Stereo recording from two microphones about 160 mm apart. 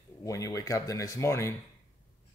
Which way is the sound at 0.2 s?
20° left (ahead or behind).